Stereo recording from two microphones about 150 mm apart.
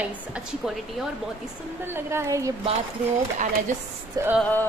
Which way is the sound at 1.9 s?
15° right (ahead or behind).